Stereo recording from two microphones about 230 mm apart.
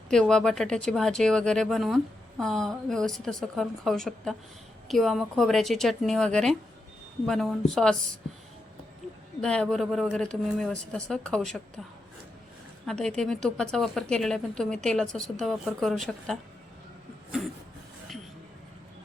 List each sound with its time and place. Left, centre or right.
0.1 s a woman's voice: centre
9.4 s a woman's voice: centre
12.8 s a woman's voice: centre